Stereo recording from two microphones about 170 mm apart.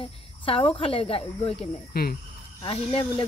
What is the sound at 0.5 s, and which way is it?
Speech, 35° left (ahead or behind).